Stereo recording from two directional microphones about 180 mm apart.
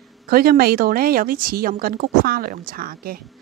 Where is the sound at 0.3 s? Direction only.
55° right (ahead or behind).